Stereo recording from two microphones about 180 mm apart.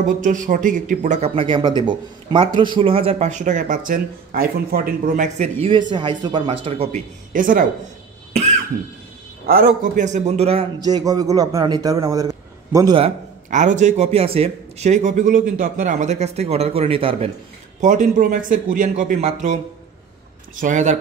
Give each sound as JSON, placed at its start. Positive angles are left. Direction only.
{"t": 0.2, "sound": "speech", "side_deg": -45}
{"t": 8.3, "sound": "cough", "side_deg": -40}
{"t": 9.5, "sound": "speech", "side_deg": -50}
{"t": 10.8, "sound": "a man's voice", "side_deg": -20}
{"t": 13.0, "sound": "speech", "side_deg": -45}
{"t": 17.7, "sound": "speech", "side_deg": -45}
{"t": 20.5, "sound": "speech", "side_deg": -45}